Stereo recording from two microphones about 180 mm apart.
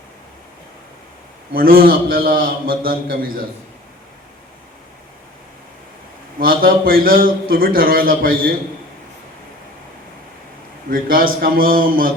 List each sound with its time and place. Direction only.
1.5 s a man's voice: 55° right (ahead or behind)
6.4 s a man's voice: 55° right (ahead or behind)
10.8 s a man's voice: 55° right (ahead or behind)